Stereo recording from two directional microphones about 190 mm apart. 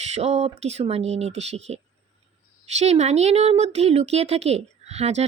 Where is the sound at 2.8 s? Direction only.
35° right (ahead or behind).